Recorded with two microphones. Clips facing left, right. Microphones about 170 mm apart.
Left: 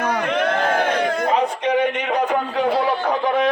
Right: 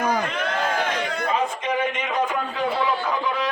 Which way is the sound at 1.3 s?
65° left (ahead or behind).